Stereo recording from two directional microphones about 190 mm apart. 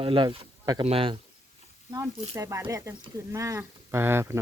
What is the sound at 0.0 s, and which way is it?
Speech, 25° right (ahead or behind).